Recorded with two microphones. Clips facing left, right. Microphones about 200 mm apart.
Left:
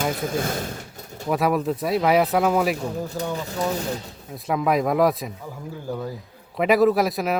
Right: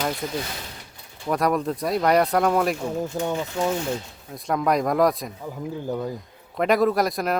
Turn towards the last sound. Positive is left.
turn(degrees=5)  # may be behind; listen again after turning